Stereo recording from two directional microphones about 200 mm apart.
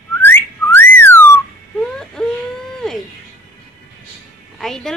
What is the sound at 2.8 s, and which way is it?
Music, centre (ahead or behind).